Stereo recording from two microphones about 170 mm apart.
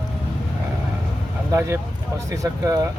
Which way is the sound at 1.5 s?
15° right (ahead or behind).